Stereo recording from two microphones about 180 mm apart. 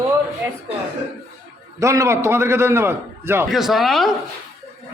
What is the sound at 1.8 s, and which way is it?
A man's voice, 15° right (ahead or behind).